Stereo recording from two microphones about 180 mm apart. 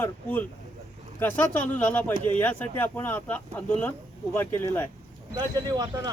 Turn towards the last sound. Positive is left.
turn(degrees=-25)  # may be behind; listen again after turning